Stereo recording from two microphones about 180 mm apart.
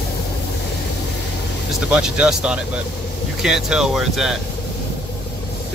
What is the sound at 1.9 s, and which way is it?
Speech, 5° right (ahead or behind).